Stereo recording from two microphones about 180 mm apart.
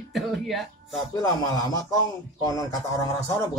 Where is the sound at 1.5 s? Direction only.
20° left (ahead or behind).